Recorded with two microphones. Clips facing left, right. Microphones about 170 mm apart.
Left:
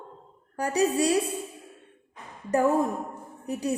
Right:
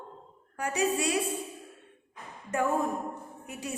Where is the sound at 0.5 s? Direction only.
35° left (ahead or behind).